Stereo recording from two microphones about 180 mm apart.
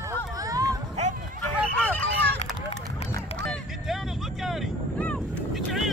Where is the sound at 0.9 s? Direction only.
40° right (ahead or behind).